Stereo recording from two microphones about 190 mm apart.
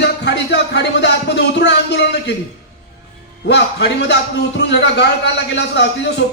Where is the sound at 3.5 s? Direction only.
65° left (ahead or behind).